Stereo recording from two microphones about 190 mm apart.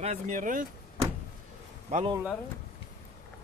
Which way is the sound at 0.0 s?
40° right (ahead or behind).